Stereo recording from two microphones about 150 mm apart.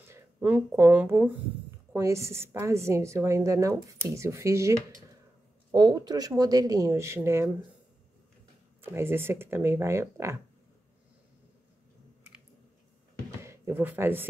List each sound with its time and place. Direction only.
0.1 s a woman's voice: 15° right (ahead or behind)
8.8 s speech: 15° right (ahead or behind)
13.4 s a sound: 15° right (ahead or behind)